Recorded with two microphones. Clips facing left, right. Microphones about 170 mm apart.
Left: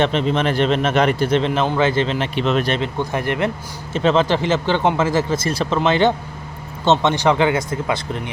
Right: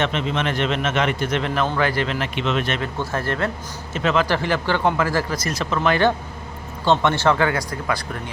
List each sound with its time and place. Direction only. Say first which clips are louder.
0.0 s a man's voice: left 5 dB; 35° left (ahead or behind)
2.8 s speech: left 3 dB; 15° left (ahead or behind)
3.9 s speech: left 4 dB; 30° left (ahead or behind)